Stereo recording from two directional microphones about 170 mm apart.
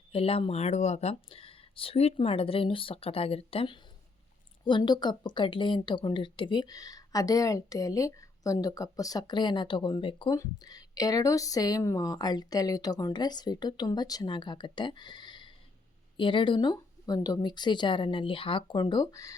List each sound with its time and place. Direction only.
0.1 s speech: 35° left (ahead or behind)